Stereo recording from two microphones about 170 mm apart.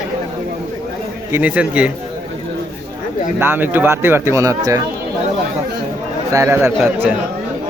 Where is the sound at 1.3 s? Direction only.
10° right (ahead or behind).